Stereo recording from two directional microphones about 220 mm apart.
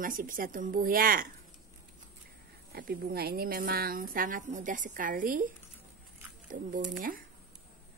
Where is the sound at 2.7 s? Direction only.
45° right (ahead or behind).